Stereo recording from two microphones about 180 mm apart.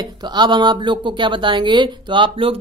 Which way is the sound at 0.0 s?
25° right (ahead or behind).